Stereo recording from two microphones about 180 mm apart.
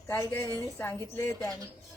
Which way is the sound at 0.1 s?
15° left (ahead or behind).